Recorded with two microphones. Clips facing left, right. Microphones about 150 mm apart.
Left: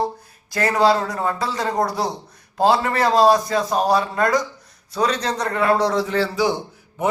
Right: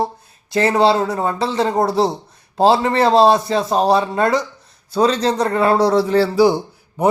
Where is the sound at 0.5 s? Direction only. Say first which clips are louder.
Right 3 dB; 25° right (ahead or behind).